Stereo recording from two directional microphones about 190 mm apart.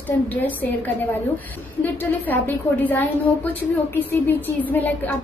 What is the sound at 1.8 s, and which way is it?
Speech, 10° left (ahead or behind).